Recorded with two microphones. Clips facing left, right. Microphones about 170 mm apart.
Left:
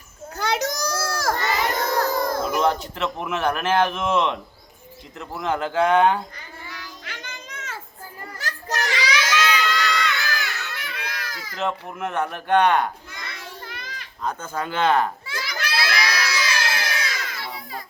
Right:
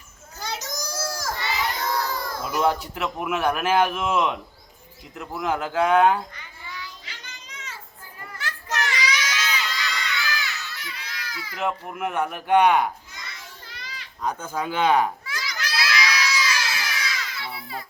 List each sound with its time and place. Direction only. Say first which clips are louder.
0.3 s children playing: left 8 dB; 70° left (ahead or behind)
1.4 s crowd: left 4 dB; 50° left (ahead or behind)
2.0 s a sound: left 6 dB; 45° left (ahead or behind)
2.6 s speech: right 3 dB; 10° right (ahead or behind)
6.7 s child singing: right 1 dB; 65° left (ahead or behind)
8.4 s children playing: left 1 dB; 40° left (ahead or behind)
9.0 s crowd: left 5 dB; 70° left (ahead or behind)
10.2 s baby cry: left 2 dB; 50° left (ahead or behind)
11.5 s speech: left 1 dB; 10° right (ahead or behind)
13.1 s children playing: left 5 dB; 60° left (ahead or behind)
14.3 s speech: even; 10° right (ahead or behind)
15.4 s children playing: left 6 dB; 55° left (ahead or behind)
15.9 s baby cry: even; 55° left (ahead or behind)